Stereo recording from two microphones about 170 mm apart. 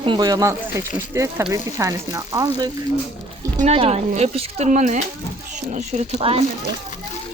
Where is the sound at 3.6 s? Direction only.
35° right (ahead or behind).